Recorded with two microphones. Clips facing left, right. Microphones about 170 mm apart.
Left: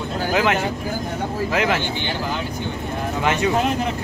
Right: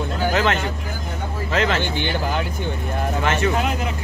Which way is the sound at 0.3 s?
10° left (ahead or behind).